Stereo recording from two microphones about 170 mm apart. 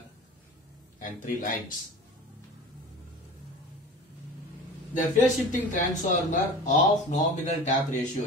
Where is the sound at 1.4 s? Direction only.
55° left (ahead or behind).